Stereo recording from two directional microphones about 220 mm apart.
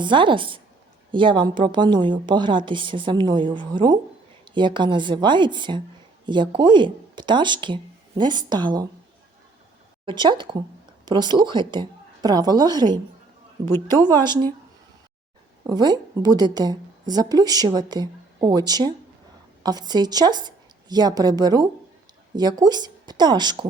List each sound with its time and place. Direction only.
0.0 s a woman's voice: 20° right (ahead or behind)
10.1 s a woman's voice: 20° right (ahead or behind)
13.7 s speech: 10° left (ahead or behind)
13.9 s a woman's voice: 20° right (ahead or behind)
15.6 s a woman's voice: 20° right (ahead or behind)